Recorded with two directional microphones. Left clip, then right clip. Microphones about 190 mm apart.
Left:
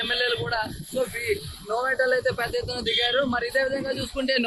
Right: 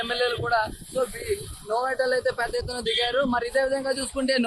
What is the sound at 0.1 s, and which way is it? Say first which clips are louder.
Speech: right 3 dB; 40° right (ahead or behind).